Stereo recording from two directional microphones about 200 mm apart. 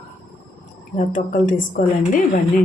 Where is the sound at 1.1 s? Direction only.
40° left (ahead or behind).